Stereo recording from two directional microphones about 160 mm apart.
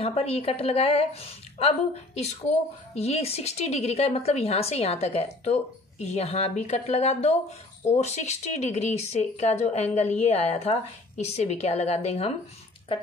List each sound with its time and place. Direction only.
0.0 s a woman's voice: 40° left (ahead or behind)